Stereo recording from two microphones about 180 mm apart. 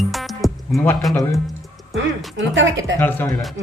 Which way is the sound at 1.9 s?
90° right.